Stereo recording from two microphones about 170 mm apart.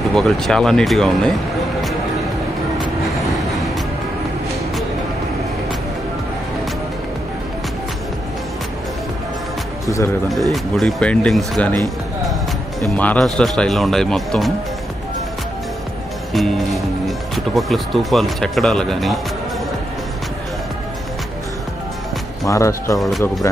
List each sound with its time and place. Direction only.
0.1 s speech: centre (ahead or behind)
9.8 s speech: 20° left (ahead or behind)
10.5 s speech: centre (ahead or behind)
12.8 s speech: 10° left (ahead or behind)
16.3 s speech: centre (ahead or behind)
22.5 s speech: 20° left (ahead or behind)
22.9 s speech: centre (ahead or behind)